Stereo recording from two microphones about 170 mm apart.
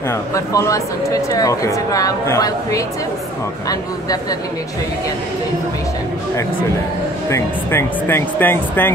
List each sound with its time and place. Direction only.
0.1 s speech: 20° left (ahead or behind)
7.2 s speech: 15° left (ahead or behind)